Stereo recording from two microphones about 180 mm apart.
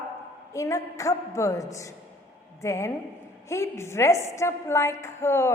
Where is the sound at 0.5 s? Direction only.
15° left (ahead or behind).